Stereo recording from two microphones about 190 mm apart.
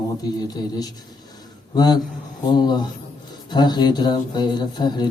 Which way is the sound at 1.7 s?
20° left (ahead or behind).